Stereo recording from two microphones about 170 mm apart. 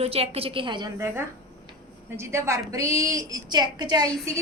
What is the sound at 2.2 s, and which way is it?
A woman's voice, 15° right (ahead or behind).